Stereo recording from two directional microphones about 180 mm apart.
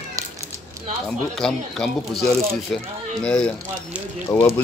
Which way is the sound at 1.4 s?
5° left (ahead or behind).